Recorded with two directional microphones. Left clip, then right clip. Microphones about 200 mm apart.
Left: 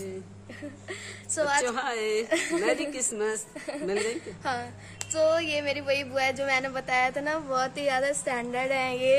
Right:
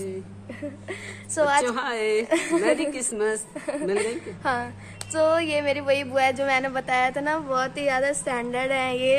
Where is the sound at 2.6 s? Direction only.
20° left (ahead or behind).